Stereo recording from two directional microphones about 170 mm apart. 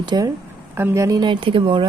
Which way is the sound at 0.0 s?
25° right (ahead or behind).